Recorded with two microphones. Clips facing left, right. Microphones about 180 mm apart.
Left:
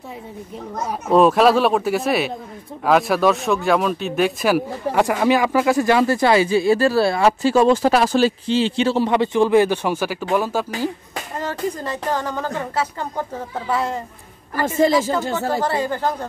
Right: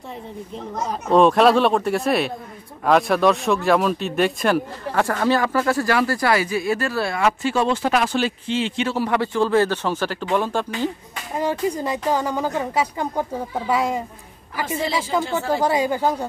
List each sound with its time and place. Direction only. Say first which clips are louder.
0.7 s speech: left 1 dB; 5° left (ahead or behind)
11.3 s speech: right 3 dB; 10° right (ahead or behind)
14.8 s speech: left 10 dB; 45° left (ahead or behind)
15.5 s speech: right 4 dB; 15° right (ahead or behind)